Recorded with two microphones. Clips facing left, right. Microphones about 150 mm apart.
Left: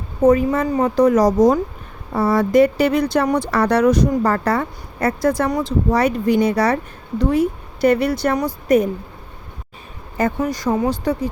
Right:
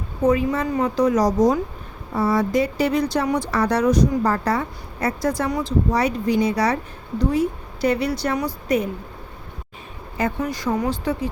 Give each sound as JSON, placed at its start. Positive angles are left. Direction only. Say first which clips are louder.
{"t": 0.2, "sound": "speech", "louder": "left 5 dB", "side_deg": 45}
{"t": 10.2, "sound": "speech", "louder": "left 4 dB", "side_deg": 45}